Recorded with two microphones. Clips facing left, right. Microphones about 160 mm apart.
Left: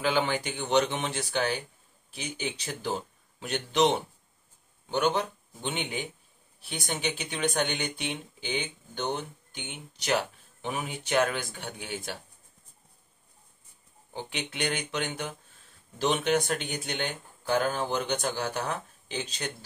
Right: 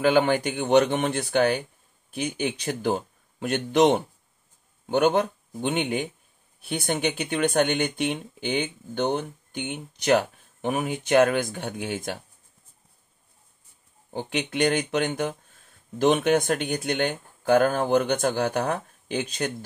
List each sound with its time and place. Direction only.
0.0 s speech: 50° right (ahead or behind)
5.0 s speech: 55° right (ahead or behind)
14.1 s speech: 50° right (ahead or behind)